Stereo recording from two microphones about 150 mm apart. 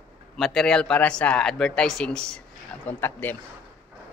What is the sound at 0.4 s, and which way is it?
Speech, centre (ahead or behind).